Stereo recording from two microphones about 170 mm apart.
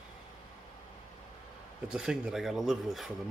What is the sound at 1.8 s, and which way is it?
Speech, 5° right (ahead or behind).